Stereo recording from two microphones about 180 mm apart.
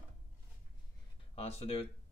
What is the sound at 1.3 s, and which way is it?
Speech, 35° left (ahead or behind).